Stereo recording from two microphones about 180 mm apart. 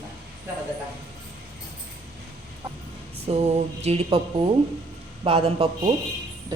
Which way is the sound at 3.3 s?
30° right (ahead or behind).